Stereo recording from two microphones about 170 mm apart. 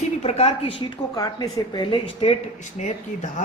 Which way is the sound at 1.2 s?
20° left (ahead or behind).